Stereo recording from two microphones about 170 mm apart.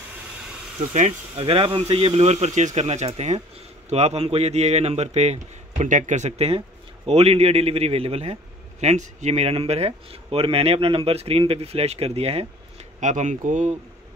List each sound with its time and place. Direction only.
0.7 s speech: 40° right (ahead or behind)